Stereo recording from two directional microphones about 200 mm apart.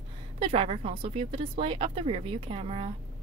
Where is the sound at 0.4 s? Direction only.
30° right (ahead or behind).